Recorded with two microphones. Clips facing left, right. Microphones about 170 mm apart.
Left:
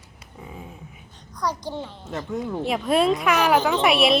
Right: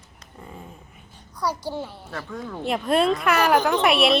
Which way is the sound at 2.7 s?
Centre (ahead or behind).